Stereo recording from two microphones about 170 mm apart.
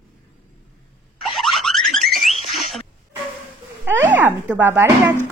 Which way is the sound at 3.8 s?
10° right (ahead or behind).